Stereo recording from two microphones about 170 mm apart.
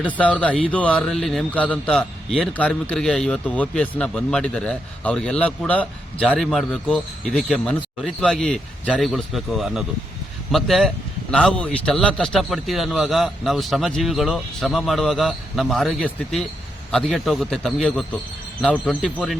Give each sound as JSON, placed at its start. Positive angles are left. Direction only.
{"t": 0.0, "sound": "speech", "side_deg": 10}
{"t": 6.2, "sound": "a man's voice", "side_deg": -5}